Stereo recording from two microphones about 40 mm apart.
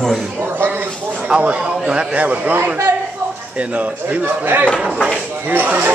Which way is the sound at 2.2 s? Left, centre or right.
Right.